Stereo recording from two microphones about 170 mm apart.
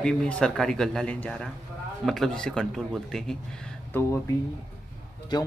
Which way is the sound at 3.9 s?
15° left (ahead or behind).